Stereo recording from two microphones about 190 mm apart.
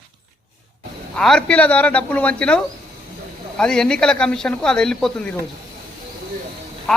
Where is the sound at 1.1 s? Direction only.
5° left (ahead or behind).